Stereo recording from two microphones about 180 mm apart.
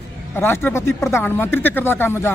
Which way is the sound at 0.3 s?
15° left (ahead or behind).